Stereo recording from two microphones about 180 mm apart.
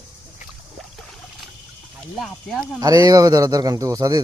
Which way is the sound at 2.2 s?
Centre (ahead or behind).